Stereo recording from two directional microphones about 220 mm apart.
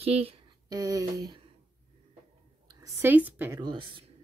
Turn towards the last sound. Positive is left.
turn(degrees=-20)  # may be behind; listen again after turning